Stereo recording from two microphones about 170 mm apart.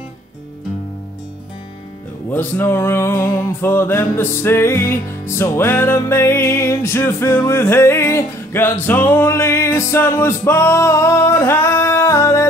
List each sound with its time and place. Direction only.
2.3 s music: 15° left (ahead or behind)